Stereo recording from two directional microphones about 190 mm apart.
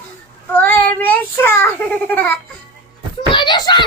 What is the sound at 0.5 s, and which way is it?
A child's voice, 10° left (ahead or behind).